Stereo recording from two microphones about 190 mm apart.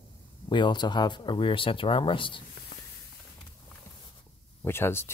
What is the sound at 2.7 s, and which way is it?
Spray, 60° left (ahead or behind).